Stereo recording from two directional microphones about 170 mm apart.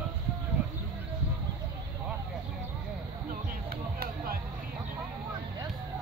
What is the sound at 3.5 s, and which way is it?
Music, 60° right (ahead or behind).